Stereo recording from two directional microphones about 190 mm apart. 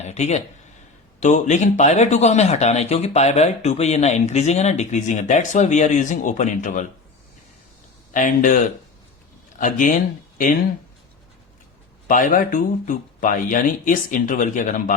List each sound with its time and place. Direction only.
0.0 s a sound: 35° left (ahead or behind)
1.2 s speech: 40° left (ahead or behind)
8.1 s speech: 45° left (ahead or behind)
12.0 s speech: 45° left (ahead or behind)